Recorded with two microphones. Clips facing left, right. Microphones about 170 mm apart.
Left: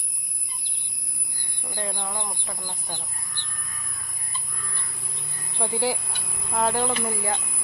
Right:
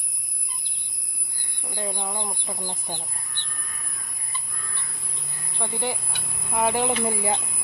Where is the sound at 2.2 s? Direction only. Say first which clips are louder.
Right 2 dB; 20° right (ahead or behind).